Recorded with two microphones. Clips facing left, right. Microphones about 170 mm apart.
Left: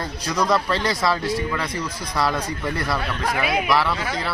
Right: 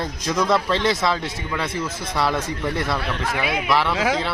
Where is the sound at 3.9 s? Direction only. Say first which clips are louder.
Right 6 dB; 90° right.